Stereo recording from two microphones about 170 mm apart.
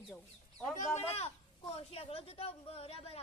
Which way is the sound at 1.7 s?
35° left (ahead or behind).